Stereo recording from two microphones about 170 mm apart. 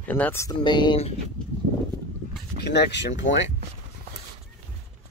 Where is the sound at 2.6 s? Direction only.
80° left.